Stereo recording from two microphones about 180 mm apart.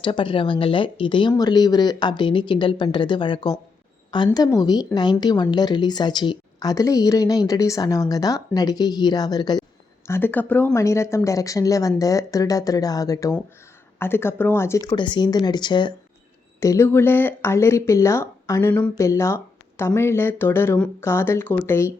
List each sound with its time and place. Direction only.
0.0 s speech: 30° left (ahead or behind)
10.1 s speech: 10° left (ahead or behind)
14.8 s speech: 25° left (ahead or behind)